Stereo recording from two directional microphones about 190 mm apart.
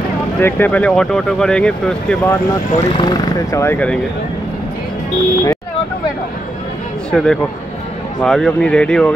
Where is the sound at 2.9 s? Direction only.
25° left (ahead or behind).